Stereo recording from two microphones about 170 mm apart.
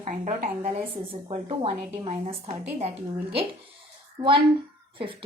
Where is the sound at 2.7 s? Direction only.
35° right (ahead or behind).